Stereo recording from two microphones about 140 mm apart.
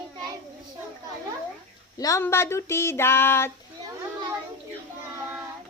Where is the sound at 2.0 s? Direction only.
25° left (ahead or behind).